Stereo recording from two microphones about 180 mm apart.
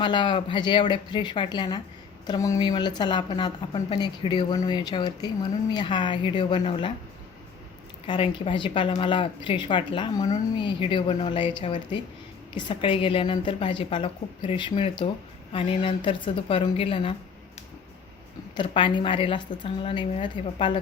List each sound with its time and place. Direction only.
0.0 s speech: 25° left (ahead or behind)
8.0 s speech: 25° left (ahead or behind)
18.5 s speech: 30° left (ahead or behind)